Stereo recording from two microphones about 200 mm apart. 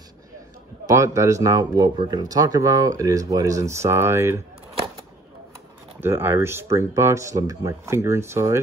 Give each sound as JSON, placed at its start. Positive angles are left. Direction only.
{"t": 0.8, "sound": "speech", "side_deg": -15}
{"t": 5.9, "sound": "speech", "side_deg": -10}